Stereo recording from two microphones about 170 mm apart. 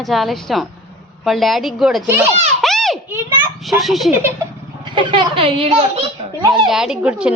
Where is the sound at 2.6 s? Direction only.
Centre (ahead or behind).